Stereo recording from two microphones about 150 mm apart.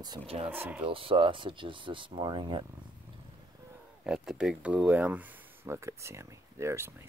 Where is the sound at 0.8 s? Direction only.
35° right (ahead or behind).